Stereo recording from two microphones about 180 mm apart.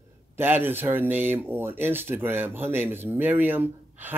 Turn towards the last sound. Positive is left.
turn(degrees=-10)  # may be behind; listen again after turning